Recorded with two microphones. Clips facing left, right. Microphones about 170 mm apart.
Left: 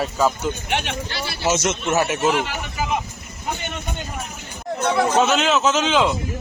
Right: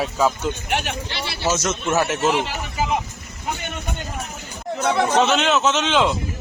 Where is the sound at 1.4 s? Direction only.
25° left (ahead or behind).